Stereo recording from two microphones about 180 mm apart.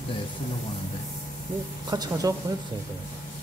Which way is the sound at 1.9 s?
20° right (ahead or behind).